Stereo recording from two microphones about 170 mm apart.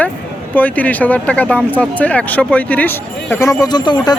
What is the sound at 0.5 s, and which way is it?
Speech, 10° left (ahead or behind).